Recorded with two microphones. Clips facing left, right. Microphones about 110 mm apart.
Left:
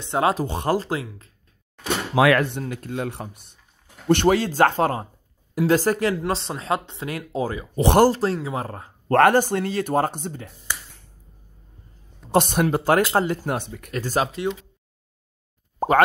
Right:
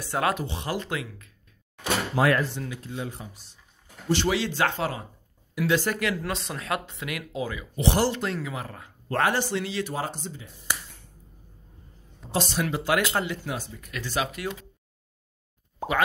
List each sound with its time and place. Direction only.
0.0 s speech: 25° left (ahead or behind)
0.5 s speech: 45° left (ahead or behind)
0.8 s speech: 30° left (ahead or behind)
2.1 s speech: 85° left; by 2.6 s 70° left (ahead or behind)
2.7 s speech: 60° left (ahead or behind); by 8.9 s 40° left (ahead or behind)
9.1 s speech: 55° left (ahead or behind)
12.3 s speech: 55° left (ahead or behind)
13.6 s speech: 60° left (ahead or behind)
13.9 s speech: 40° left (ahead or behind)